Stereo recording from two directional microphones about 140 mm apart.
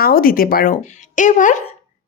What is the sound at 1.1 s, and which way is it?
Speech, 65° left (ahead or behind).